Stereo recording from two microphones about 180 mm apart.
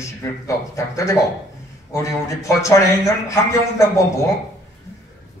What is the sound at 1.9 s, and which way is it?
A man's voice, 15° left (ahead or behind).